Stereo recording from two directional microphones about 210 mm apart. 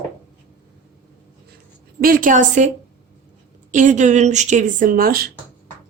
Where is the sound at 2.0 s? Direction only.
40° right (ahead or behind).